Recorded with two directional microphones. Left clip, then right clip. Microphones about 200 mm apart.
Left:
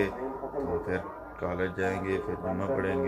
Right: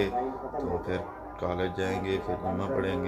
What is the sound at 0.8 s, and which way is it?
Speech, 5° right (ahead or behind).